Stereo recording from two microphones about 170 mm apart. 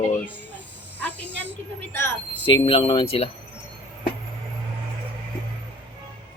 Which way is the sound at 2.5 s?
30° left (ahead or behind).